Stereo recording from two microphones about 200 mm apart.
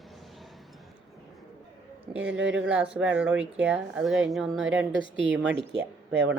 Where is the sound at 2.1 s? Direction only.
5° right (ahead or behind).